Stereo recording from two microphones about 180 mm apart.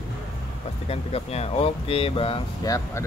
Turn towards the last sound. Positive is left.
turn(degrees=15)  # may be behind; listen again after turning